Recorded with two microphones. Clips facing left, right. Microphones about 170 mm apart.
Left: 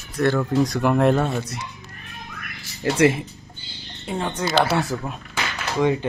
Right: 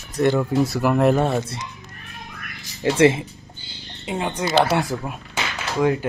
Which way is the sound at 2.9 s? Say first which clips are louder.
Right 2 dB; 25° right (ahead or behind).